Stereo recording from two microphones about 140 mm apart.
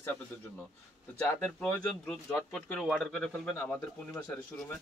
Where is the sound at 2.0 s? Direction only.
10° left (ahead or behind).